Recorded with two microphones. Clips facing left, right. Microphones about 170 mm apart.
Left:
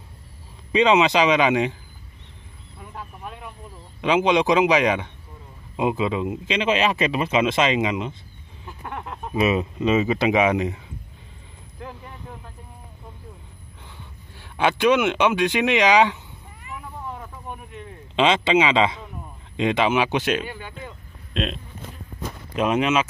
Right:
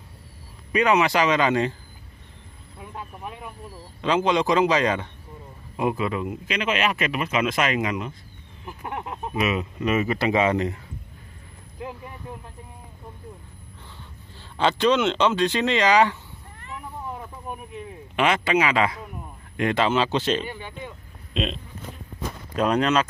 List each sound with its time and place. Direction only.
0.7 s speech: 20° left (ahead or behind)
2.8 s a sound: 5° right (ahead or behind)
4.0 s speech: 15° left (ahead or behind)
8.6 s a sound: 15° right (ahead or behind)
9.3 s speech: 30° left (ahead or behind)
14.6 s speech: 10° left (ahead or behind)
18.1 s speech: 20° left (ahead or behind)
20.7 s a sound: centre (ahead or behind)
22.6 s speech: 10° left (ahead or behind)